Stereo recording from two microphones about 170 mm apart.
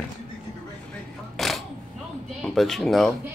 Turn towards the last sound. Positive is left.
turn(degrees=0)  # may be behind; listen again after turning